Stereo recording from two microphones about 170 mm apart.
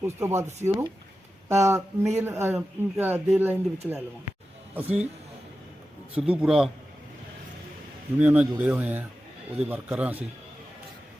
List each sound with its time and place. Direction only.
0.0 s speech: 15° right (ahead or behind)
6.1 s a man's voice: 5° right (ahead or behind)
8.2 s speech: 10° right (ahead or behind)